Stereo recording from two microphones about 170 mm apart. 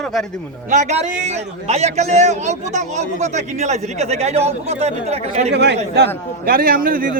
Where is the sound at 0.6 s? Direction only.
45° right (ahead or behind).